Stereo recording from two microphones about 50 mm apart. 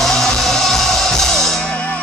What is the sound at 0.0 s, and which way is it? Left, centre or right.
Music, centre.